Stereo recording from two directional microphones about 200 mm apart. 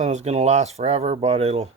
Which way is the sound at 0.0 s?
35° right (ahead or behind).